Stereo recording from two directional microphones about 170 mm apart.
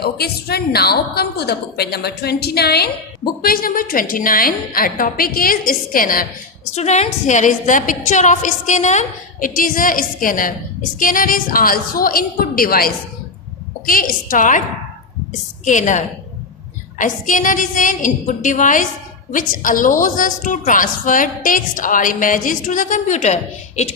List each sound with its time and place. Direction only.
0.0 s a woman's voice: 70° left (ahead or behind)
6.7 s a woman's voice: 40° left (ahead or behind)
15.6 s a woman's voice: 45° left (ahead or behind)